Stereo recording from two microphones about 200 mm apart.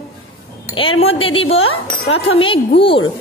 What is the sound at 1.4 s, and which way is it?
Speech, 85° left.